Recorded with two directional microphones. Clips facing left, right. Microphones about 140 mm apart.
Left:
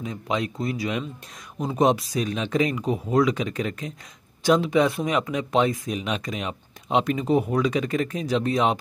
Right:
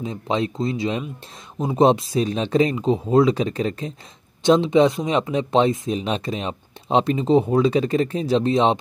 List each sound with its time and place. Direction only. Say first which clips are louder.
0.0 s speech: right 4 dB; 30° right (ahead or behind)